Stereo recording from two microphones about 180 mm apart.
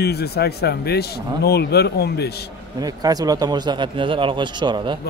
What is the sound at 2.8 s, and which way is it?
A man's voice, 20° right (ahead or behind).